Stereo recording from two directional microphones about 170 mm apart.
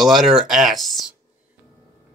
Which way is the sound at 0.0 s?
Centre (ahead or behind).